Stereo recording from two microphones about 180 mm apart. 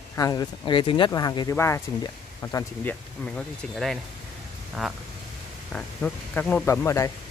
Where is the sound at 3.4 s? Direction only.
Centre (ahead or behind).